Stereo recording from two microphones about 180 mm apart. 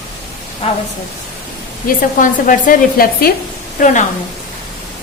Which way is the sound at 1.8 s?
50° left (ahead or behind).